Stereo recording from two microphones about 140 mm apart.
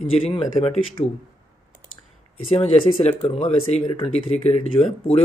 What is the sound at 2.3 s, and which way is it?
Speech, 45° left (ahead or behind).